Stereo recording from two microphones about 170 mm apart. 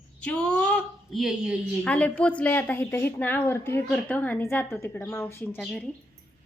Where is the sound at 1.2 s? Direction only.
5° right (ahead or behind).